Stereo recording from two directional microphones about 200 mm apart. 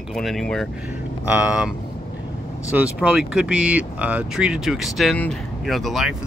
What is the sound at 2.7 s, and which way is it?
Speech, 5° right (ahead or behind).